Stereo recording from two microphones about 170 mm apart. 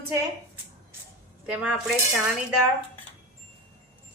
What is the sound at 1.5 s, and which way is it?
Speech, 10° right (ahead or behind).